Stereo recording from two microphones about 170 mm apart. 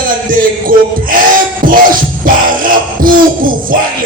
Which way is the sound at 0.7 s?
55° right (ahead or behind).